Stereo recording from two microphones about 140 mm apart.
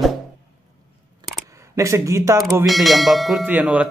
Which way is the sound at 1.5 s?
20° right (ahead or behind).